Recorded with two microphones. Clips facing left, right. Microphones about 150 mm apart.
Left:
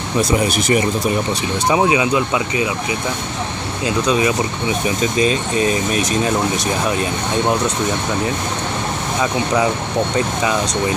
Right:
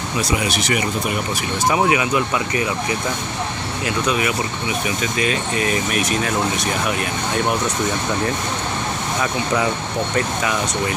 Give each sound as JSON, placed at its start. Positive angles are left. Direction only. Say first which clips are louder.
{"t": 0.3, "sound": "speech", "louder": "left 4 dB", "side_deg": 40}
{"t": 1.7, "sound": "speech", "louder": "left 3 dB", "side_deg": 20}